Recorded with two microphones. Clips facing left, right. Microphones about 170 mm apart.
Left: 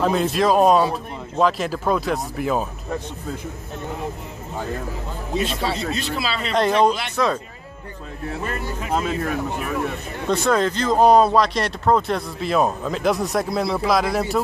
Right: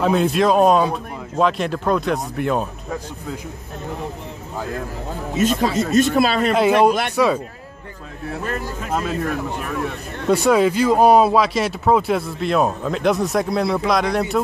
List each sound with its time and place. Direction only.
0.0 s speech: centre (ahead or behind)
5.4 s speech: 45° right (ahead or behind)
6.5 s speech: 10° right (ahead or behind)
8.5 s speech: centre (ahead or behind)
10.3 s speech: 10° right (ahead or behind)